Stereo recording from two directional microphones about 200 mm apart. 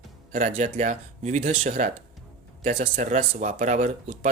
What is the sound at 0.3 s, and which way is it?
Speech, 40° right (ahead or behind).